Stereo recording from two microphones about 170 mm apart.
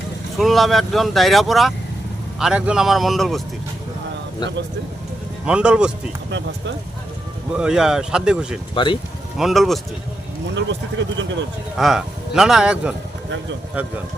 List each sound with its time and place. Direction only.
0.3 s speech: centre (ahead or behind)
5.5 s speech: 5° right (ahead or behind)
7.5 s speech: 5° right (ahead or behind)
8.7 s speech: 30° left (ahead or behind)
9.4 s speech: centre (ahead or behind)
10.5 s speech: 90° right
11.8 s speech: centre (ahead or behind)